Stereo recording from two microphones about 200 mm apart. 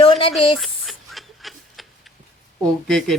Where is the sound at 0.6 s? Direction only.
Centre (ahead or behind).